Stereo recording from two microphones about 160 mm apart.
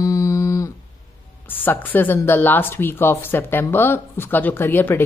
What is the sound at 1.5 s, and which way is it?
Speech, 10° left (ahead or behind).